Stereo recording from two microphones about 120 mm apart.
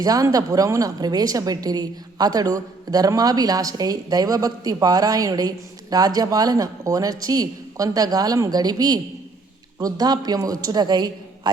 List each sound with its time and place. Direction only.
0.0 s a woman's voice: 30° right (ahead or behind)